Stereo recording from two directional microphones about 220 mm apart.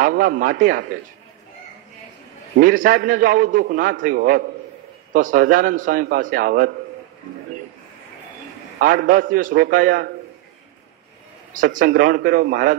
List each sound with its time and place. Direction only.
0.0 s a man's voice: 40° right (ahead or behind)
2.6 s a man's voice: 40° right (ahead or behind)
8.7 s a man's voice: 40° right (ahead or behind)
11.5 s a man's voice: 35° right (ahead or behind)